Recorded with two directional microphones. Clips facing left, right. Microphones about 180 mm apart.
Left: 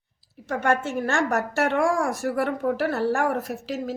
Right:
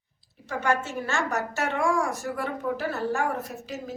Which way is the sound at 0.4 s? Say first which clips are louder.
Left 3 dB; 60° left (ahead or behind).